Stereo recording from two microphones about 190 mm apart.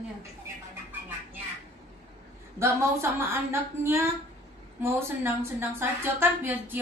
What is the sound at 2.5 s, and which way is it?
A woman's voice, 15° right (ahead or behind).